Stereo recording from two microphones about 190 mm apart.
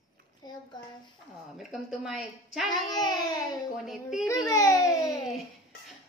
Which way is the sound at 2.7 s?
20° left (ahead or behind).